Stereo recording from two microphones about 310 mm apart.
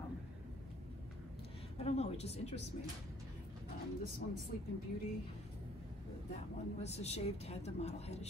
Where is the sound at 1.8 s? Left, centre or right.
Centre.